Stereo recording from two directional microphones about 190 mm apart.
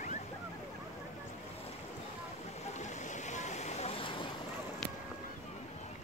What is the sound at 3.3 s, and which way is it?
Vehicle, 40° left (ahead or behind).